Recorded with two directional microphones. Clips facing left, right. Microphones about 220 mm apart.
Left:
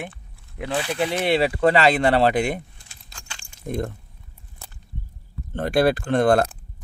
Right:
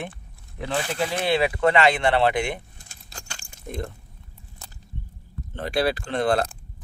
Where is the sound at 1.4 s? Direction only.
35° left (ahead or behind).